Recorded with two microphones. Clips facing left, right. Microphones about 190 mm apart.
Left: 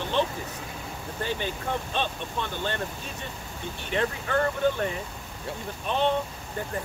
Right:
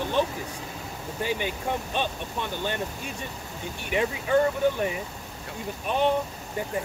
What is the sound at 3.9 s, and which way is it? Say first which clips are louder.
Speech: right 3 dB; 10° right (ahead or behind).